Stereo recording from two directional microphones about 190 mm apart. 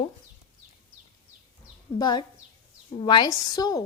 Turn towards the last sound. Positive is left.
turn(degrees=20)  # may be behind; listen again after turning